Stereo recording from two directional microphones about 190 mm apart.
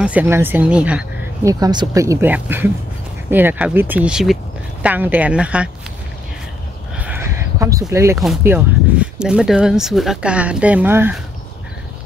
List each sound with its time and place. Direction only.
0.0 s speech: 10° right (ahead or behind)
1.4 s speech: 20° right (ahead or behind)
7.0 s a sound: 10° right (ahead or behind)
7.9 s speech: 15° right (ahead or behind)